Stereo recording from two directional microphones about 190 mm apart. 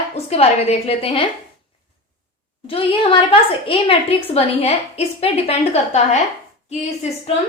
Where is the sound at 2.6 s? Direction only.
30° left (ahead or behind).